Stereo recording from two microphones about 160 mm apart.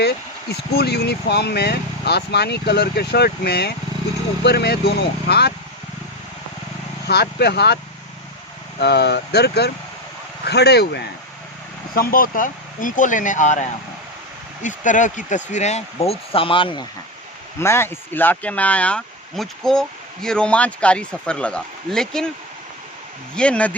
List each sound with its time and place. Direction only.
0.7 s speech: 90° left
7.1 s speech: 90° left
8.8 s speech: 90° left
11.9 s speech: 60° left (ahead or behind); by 16.8 s 30° left (ahead or behind)
17.6 s speech: 15° left (ahead or behind)
23.3 s speech: 5° left (ahead or behind)